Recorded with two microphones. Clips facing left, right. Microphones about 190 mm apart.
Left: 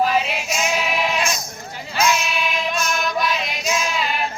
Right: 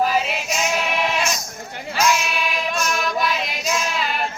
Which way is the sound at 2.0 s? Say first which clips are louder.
Even; centre (ahead or behind).